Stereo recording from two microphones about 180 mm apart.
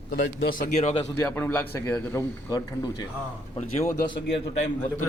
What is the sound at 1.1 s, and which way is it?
Speech, 10° left (ahead or behind).